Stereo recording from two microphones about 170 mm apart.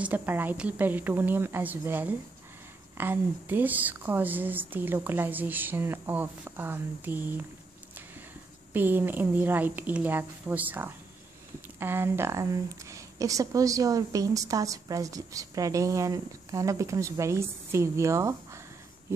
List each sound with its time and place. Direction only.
0.0 s speech: 10° right (ahead or behind)
8.7 s speech: 10° right (ahead or behind)